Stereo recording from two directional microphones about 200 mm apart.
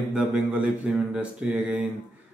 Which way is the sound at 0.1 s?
5° right (ahead or behind).